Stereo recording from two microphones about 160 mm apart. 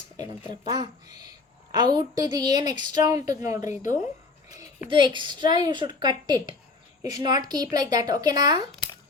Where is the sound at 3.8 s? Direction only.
55° left (ahead or behind).